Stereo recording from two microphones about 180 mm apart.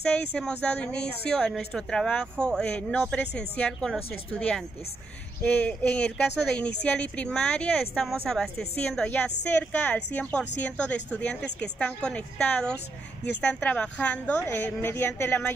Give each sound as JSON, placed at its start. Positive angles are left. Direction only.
{"t": 0.1, "sound": "a woman's voice", "side_deg": 5}